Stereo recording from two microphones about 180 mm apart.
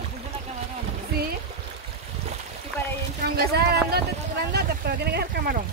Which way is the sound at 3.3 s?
60° right (ahead or behind).